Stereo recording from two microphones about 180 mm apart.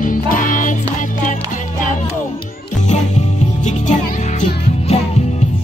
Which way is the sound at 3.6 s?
40° left (ahead or behind).